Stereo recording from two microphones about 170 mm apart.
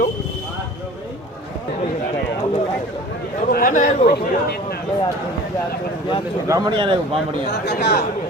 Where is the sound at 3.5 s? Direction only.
50° left (ahead or behind).